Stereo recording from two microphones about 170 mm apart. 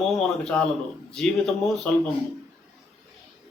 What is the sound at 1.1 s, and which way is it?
Mantra, 5° left (ahead or behind).